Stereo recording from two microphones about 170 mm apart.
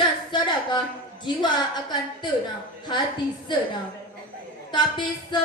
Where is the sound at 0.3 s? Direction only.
25° left (ahead or behind).